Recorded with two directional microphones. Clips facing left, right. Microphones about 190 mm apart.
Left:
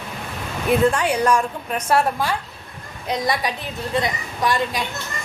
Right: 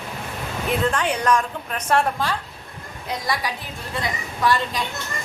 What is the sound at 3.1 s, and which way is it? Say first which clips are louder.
A woman's voice: left 4 dB; 20° left (ahead or behind).